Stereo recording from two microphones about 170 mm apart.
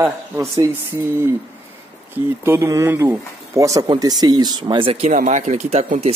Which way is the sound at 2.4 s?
15° right (ahead or behind).